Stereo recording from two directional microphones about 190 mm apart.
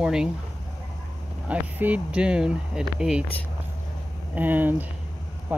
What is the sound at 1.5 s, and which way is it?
Speech, 10° right (ahead or behind).